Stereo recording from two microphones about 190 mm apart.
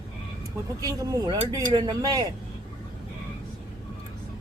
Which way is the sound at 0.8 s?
20° right (ahead or behind).